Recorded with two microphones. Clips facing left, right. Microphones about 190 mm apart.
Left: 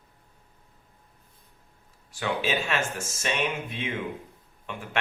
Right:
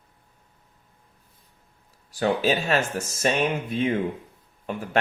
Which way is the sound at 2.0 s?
40° right (ahead or behind).